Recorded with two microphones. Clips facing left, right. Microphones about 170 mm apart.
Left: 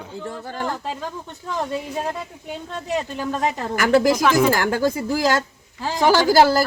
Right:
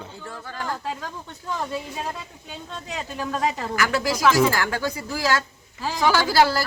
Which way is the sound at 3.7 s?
50° left (ahead or behind).